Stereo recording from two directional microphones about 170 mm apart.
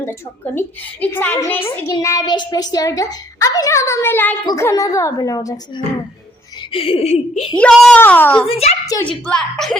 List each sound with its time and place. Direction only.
0.0 s a woman's voice: 15° left (ahead or behind)
6.7 s speech: 30° left (ahead or behind)
7.6 s speech: 5° left (ahead or behind)
8.4 s speech: 35° left (ahead or behind)
9.2 s speech: 5° left (ahead or behind)